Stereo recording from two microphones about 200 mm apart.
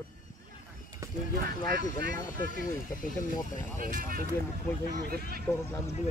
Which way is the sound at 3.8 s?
45° right (ahead or behind).